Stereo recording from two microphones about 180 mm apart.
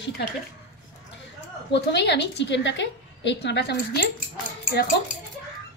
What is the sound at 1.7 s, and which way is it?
A woman's voice, 70° left (ahead or behind).